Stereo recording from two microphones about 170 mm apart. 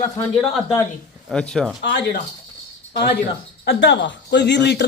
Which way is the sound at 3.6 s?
90° left.